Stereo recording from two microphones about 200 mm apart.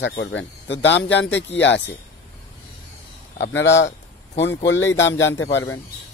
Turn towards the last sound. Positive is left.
turn(degrees=75)  # may be behind; listen again after turning